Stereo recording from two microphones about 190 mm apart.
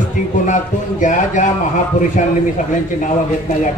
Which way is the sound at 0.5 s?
40° left (ahead or behind).